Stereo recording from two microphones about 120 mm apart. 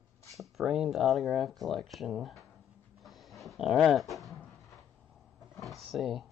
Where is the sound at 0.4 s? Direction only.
5° right (ahead or behind).